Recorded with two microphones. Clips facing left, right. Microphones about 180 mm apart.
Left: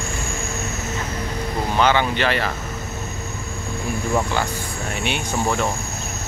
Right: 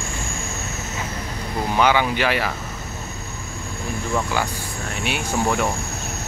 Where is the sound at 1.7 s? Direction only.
10° right (ahead or behind).